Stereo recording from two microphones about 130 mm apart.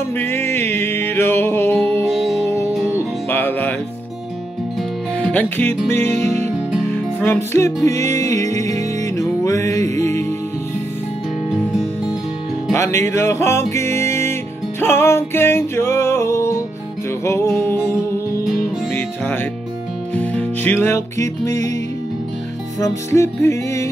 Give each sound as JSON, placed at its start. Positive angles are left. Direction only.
{"t": 0.1, "sound": "music", "side_deg": 15}
{"t": 2.0, "sound": "music", "side_deg": 0}
{"t": 2.4, "sound": "music", "side_deg": 20}
{"t": 5.1, "sound": "music", "side_deg": 10}
{"t": 12.7, "sound": "music", "side_deg": 20}
{"t": 18.9, "sound": "music", "side_deg": 15}
{"t": 22.8, "sound": "music", "side_deg": 25}